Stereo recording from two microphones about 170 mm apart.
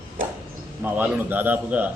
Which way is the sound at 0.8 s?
10° right (ahead or behind).